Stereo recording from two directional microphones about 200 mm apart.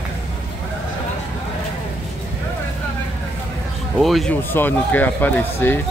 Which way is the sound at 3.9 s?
Centre (ahead or behind).